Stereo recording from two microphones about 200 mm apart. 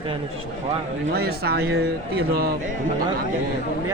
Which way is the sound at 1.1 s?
50° right (ahead or behind).